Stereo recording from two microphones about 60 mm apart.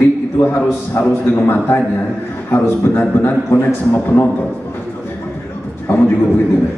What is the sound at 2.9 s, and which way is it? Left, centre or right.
Speech, left.